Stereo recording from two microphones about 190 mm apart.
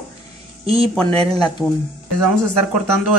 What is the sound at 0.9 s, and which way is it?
Speech, 5° left (ahead or behind).